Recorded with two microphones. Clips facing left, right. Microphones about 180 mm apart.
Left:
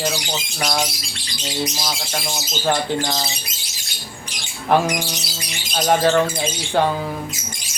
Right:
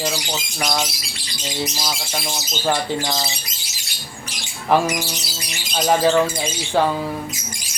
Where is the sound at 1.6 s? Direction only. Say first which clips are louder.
Even; centre (ahead or behind).